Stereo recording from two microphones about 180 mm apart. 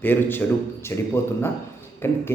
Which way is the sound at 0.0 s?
10° left (ahead or behind).